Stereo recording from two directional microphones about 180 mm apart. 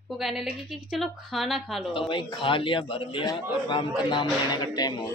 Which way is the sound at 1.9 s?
30° left (ahead or behind).